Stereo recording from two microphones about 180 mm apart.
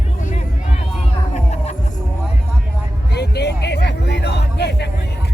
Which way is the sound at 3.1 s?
70° left (ahead or behind).